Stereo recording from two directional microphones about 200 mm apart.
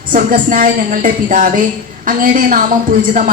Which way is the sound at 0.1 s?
45° right (ahead or behind).